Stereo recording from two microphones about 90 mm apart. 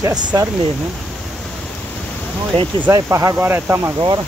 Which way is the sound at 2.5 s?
90° right.